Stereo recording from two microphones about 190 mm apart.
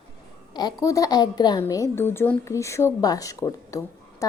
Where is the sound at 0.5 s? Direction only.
20° left (ahead or behind).